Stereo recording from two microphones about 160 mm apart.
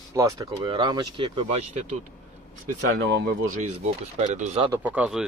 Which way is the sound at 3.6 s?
45° right (ahead or behind).